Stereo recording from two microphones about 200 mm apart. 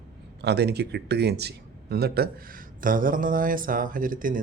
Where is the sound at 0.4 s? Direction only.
55° right (ahead or behind).